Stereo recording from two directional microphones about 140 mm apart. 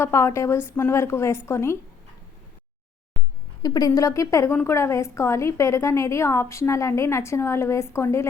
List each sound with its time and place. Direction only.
0.0 s a woman's voice: 20° left (ahead or behind)
3.6 s a woman's voice: 25° left (ahead or behind)